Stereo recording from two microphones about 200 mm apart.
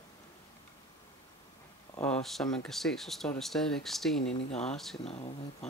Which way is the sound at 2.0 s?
5° left (ahead or behind).